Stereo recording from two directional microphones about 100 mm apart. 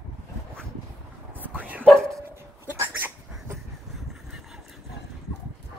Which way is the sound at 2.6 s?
20° right (ahead or behind).